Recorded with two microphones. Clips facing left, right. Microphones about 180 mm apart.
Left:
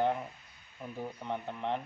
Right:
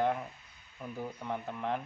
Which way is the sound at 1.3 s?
5° right (ahead or behind).